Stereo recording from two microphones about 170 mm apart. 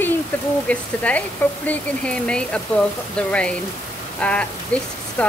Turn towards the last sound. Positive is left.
turn(degrees=10)  # may be behind; listen again after turning